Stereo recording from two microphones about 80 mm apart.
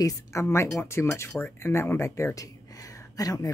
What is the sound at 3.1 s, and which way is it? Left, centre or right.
Speech, left.